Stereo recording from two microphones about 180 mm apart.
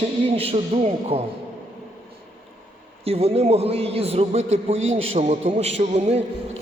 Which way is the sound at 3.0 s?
35° right (ahead or behind).